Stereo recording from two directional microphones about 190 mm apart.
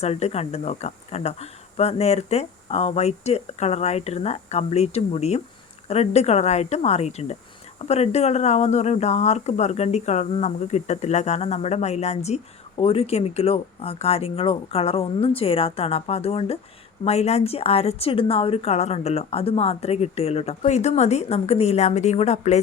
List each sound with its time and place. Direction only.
0.0 s speech: 35° left (ahead or behind)